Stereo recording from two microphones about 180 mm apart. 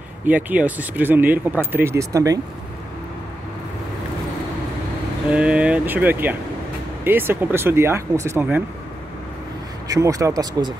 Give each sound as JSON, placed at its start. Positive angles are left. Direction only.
{"t": 0.3, "sound": "speech", "side_deg": -10}
{"t": 5.3, "sound": "speech", "side_deg": -5}
{"t": 9.8, "sound": "speech", "side_deg": -20}